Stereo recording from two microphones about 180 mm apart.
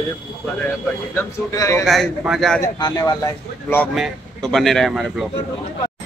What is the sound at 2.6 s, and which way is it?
Speech, 20° left (ahead or behind).